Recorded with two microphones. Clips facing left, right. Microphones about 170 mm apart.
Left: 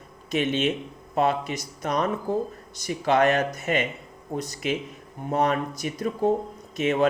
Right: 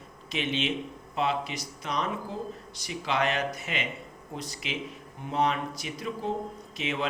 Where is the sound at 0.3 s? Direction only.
45° left (ahead or behind).